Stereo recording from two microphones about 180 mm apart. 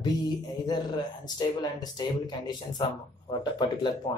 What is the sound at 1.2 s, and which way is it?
Speech, 25° left (ahead or behind).